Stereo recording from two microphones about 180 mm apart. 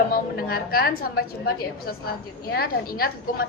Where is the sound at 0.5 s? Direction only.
55° left (ahead or behind).